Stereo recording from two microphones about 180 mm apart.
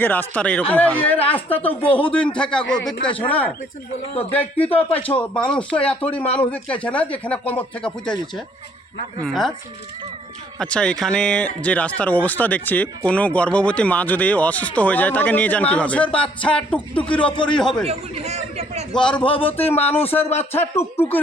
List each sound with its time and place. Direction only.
0.0 s speech: 10° left (ahead or behind)
1.8 s speech: 30° left (ahead or behind)
2.1 s a man's voice: 5° left (ahead or behind)
6.2 s speech: 35° left (ahead or behind)
6.8 s speech: 5° left (ahead or behind)
9.2 s a man's voice: centre (ahead or behind)
10.6 s a man's voice: 5° left (ahead or behind)
17.8 s speech: 35° right (ahead or behind)
18.9 s speech: 5° left (ahead or behind)